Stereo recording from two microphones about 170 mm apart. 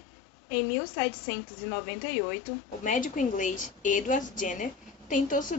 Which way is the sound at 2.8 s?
50° left (ahead or behind).